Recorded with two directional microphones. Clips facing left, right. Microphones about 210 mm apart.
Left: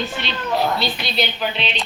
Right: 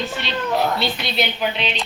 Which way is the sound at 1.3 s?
10° right (ahead or behind).